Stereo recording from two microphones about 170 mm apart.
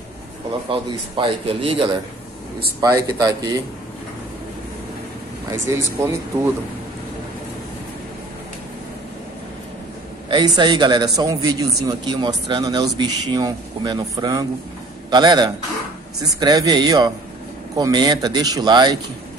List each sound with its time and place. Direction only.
0.7 s a man's voice: 30° right (ahead or behind)
3.1 s a man's voice: 20° right (ahead or behind)
5.5 s speech: 15° right (ahead or behind)
10.3 s a man's voice: 25° right (ahead or behind)